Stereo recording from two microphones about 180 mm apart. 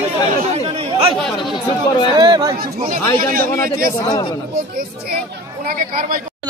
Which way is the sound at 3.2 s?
55° right (ahead or behind).